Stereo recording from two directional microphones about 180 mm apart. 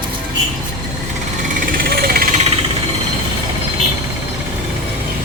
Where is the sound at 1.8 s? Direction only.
55° right (ahead or behind).